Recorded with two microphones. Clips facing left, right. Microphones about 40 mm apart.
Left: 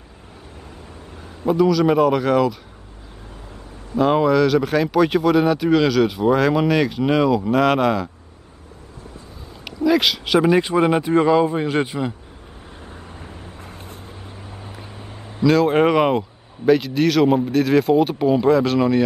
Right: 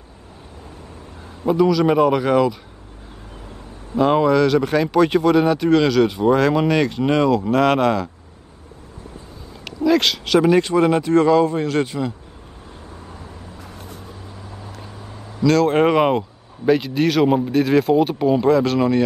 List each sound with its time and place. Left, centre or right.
1.5 s speech: centre
4.0 s speech: centre
9.8 s speech: centre
13.7 s vehicle: left
15.4 s speech: centre